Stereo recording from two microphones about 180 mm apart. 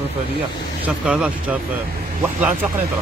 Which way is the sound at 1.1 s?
5° right (ahead or behind).